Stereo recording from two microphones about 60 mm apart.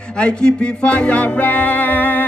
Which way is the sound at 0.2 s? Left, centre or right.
Centre.